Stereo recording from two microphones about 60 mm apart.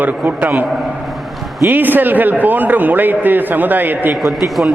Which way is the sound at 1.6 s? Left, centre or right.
Right.